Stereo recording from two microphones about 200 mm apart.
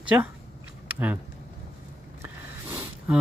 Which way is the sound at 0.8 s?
10° right (ahead or behind).